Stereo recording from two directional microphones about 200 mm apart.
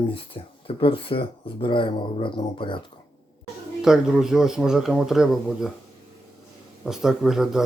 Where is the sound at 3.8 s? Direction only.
5° right (ahead or behind).